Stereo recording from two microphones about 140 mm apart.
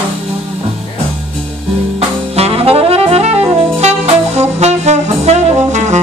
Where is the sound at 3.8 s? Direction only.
50° right (ahead or behind).